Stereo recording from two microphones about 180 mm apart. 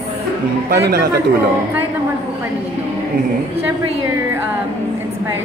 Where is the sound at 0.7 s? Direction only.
65° right (ahead or behind).